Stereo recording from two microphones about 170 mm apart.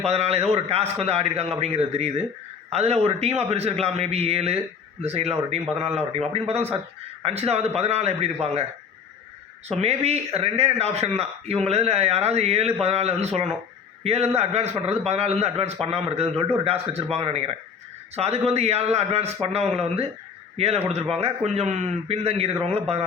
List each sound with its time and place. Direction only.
0.0 s speech: 40° right (ahead or behind)
9.6 s a man's voice: 40° right (ahead or behind)